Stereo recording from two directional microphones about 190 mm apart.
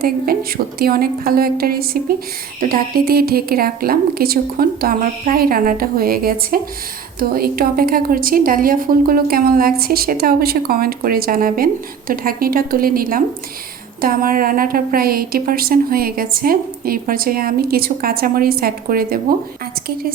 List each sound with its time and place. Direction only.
0.0 s a woman's voice: 50° right (ahead or behind)